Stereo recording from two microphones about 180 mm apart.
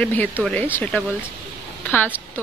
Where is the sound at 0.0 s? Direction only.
10° left (ahead or behind).